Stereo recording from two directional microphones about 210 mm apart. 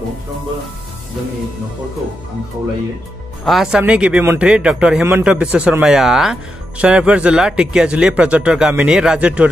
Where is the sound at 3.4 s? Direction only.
Centre (ahead or behind).